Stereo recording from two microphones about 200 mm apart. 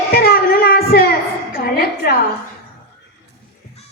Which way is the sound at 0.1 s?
50° left (ahead or behind).